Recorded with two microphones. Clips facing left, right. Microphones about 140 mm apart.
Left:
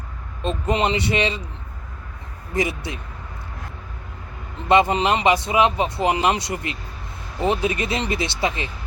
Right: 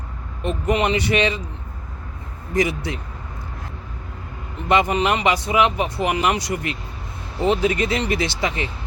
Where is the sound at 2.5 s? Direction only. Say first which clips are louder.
Right 3 dB; 25° left (ahead or behind).